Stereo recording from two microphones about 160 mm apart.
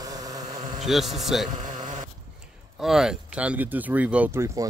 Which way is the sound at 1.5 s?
50° right (ahead or behind).